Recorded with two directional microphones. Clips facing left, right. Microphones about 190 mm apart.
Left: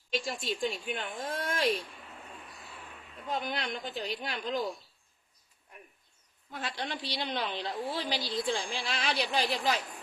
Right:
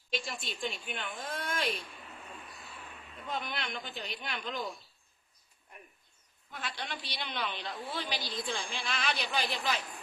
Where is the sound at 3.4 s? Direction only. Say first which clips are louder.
Left 4 dB; 35° left (ahead or behind).